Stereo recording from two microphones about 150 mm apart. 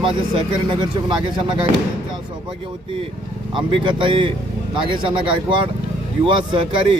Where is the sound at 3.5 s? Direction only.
35° right (ahead or behind).